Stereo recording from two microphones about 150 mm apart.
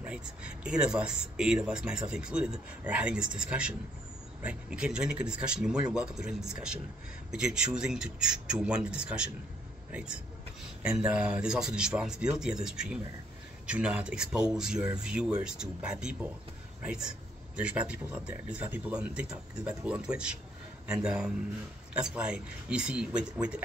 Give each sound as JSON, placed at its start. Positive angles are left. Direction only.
{"t": 0.0, "sound": "speech", "side_deg": -5}
{"t": 11.1, "sound": "speech", "side_deg": -10}